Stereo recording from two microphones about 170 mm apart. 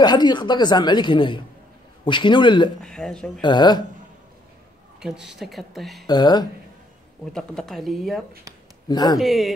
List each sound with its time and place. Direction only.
0.0 s a woman's voice: 25° left (ahead or behind)
2.8 s speech: 5° left (ahead or behind)
3.3 s a woman's voice: 25° left (ahead or behind)
5.0 s speech: 5° right (ahead or behind)
6.0 s a woman's voice: 25° left (ahead or behind)
7.3 s speech: 5° left (ahead or behind)
8.8 s a woman's voice: 25° left (ahead or behind)
9.2 s speech: centre (ahead or behind)